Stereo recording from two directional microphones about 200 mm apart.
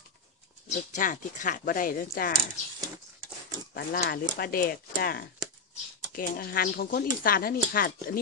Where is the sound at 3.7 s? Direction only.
45° left (ahead or behind).